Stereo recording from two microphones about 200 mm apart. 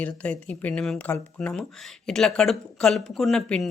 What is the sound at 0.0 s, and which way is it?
Speech, 5° left (ahead or behind).